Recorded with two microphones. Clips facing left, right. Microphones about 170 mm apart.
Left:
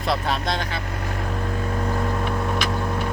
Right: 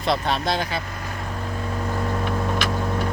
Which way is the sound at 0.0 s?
Centre (ahead or behind).